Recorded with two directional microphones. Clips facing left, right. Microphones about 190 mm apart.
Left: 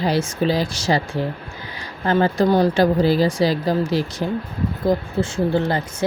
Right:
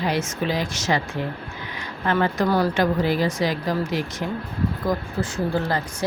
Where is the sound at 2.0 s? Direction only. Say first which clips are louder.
Left 4 dB; 35° left (ahead or behind).